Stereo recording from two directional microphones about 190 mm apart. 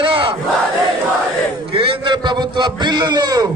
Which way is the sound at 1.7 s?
25° right (ahead or behind).